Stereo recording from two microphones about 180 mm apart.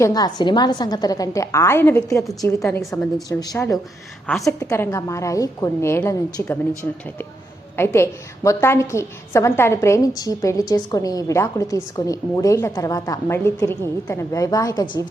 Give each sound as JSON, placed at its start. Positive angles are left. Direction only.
{"t": 0.0, "sound": "a woman's voice", "side_deg": 20}
{"t": 7.8, "sound": "a woman's voice", "side_deg": 15}